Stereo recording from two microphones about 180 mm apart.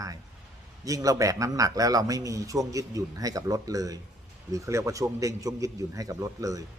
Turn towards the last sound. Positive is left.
turn(degrees=-20)  # may be behind; listen again after turning